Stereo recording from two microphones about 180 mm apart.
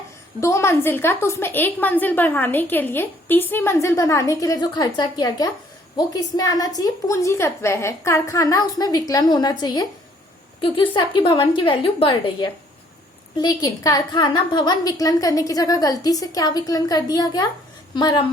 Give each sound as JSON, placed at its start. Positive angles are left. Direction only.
{"t": 0.3, "sound": "a woman's voice", "side_deg": 15}